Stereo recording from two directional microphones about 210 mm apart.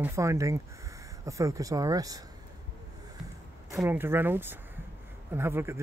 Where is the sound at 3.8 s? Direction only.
10° right (ahead or behind).